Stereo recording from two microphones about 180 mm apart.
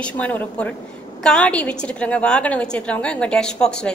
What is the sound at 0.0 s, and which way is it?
A woman's voice, 10° left (ahead or behind).